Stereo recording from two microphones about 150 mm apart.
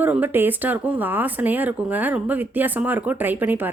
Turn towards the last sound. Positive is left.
turn(degrees=-10)  # may be behind; listen again after turning